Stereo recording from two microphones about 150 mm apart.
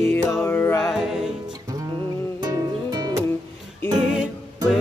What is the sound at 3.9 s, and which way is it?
Music, 5° right (ahead or behind).